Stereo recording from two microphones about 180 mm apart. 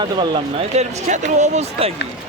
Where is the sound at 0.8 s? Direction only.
40° right (ahead or behind).